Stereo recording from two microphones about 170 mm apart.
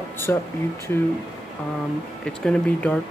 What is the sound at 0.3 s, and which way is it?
Speech, 10° left (ahead or behind).